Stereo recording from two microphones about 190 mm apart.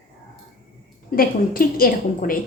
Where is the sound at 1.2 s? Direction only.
50° left (ahead or behind).